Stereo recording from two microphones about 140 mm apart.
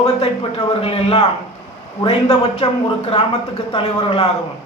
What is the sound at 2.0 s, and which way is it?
Speech, 45° left (ahead or behind).